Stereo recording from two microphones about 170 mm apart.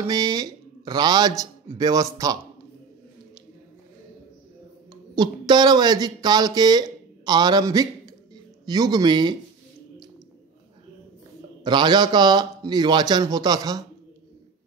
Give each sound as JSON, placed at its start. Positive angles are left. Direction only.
{"t": 0.0, "sound": "speech", "side_deg": -20}
{"t": 5.1, "sound": "speech", "side_deg": -25}
{"t": 11.6, "sound": "speech", "side_deg": -25}